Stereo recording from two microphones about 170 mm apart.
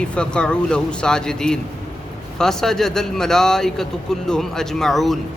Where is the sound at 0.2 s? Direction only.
5° left (ahead or behind).